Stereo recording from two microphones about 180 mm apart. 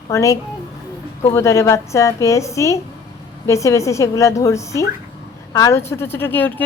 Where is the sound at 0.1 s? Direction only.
15° left (ahead or behind).